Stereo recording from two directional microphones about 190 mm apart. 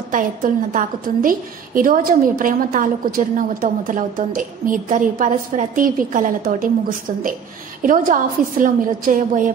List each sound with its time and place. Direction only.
0.1 s a woman's voice: 45° right (ahead or behind)